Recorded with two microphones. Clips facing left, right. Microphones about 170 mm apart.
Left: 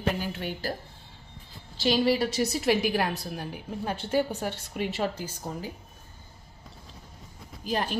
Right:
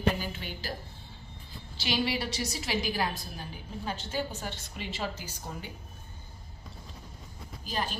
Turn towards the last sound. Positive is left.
turn(degrees=55)  # may be behind; listen again after turning